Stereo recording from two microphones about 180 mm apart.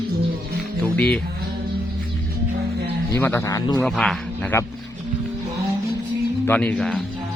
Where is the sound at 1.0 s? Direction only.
5° left (ahead or behind).